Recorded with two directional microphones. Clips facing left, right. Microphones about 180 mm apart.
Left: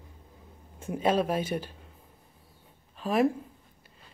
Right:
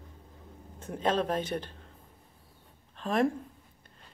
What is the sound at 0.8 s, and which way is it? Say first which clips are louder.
Speech: left 3 dB; 10° left (ahead or behind).